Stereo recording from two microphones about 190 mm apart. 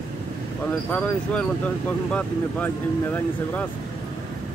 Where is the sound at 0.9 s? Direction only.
5° left (ahead or behind).